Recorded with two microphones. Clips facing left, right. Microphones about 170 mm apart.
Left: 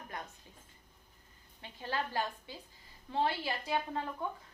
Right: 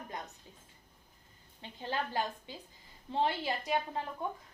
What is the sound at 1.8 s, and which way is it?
Speech, 20° right (ahead or behind).